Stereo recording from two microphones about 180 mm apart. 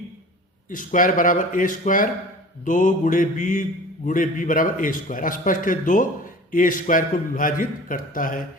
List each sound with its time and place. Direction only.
0.7 s mantra: 45° left (ahead or behind)